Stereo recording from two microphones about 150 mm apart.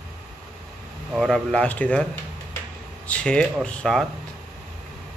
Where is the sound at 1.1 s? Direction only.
5° left (ahead or behind).